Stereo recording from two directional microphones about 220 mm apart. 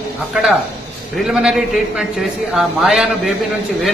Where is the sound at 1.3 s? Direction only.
Centre (ahead or behind).